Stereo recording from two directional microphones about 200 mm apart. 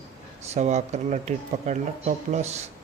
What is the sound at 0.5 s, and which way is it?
Speech, 35° right (ahead or behind).